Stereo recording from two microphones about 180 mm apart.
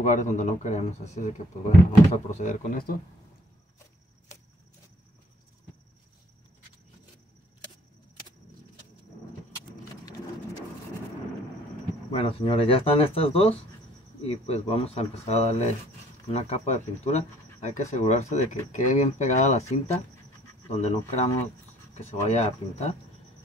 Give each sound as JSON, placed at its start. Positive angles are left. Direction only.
{"t": 0.0, "sound": "speech", "side_deg": 45}
{"t": 12.1, "sound": "speech", "side_deg": 35}